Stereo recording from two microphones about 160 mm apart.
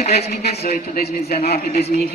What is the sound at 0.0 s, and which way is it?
Speech, 40° left (ahead or behind).